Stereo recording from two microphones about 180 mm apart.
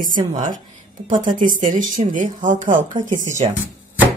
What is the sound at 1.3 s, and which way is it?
Speech, 45° right (ahead or behind).